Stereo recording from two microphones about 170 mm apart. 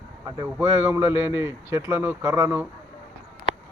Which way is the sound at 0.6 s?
15° right (ahead or behind).